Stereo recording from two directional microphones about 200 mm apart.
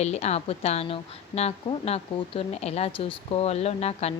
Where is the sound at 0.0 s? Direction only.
35° left (ahead or behind).